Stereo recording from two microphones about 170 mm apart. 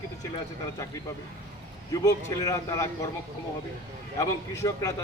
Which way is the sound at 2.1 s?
20° left (ahead or behind).